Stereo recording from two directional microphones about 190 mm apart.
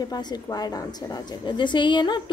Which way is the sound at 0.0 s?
20° left (ahead or behind).